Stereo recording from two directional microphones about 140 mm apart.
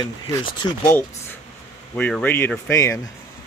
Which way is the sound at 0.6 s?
30° left (ahead or behind).